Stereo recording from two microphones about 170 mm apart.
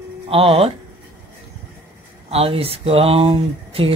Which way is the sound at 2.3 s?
35° right (ahead or behind).